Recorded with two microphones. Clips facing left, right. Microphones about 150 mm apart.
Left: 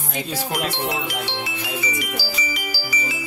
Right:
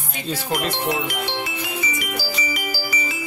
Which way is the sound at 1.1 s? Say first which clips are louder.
Right 1 dB; 50° right (ahead or behind).